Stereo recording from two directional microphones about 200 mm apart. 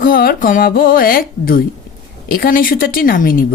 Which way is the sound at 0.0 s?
45° left (ahead or behind).